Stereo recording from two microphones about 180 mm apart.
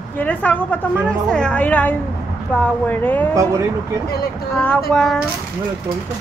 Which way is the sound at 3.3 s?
15° right (ahead or behind).